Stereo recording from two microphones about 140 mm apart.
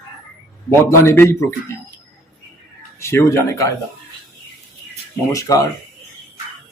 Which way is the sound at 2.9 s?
20° left (ahead or behind).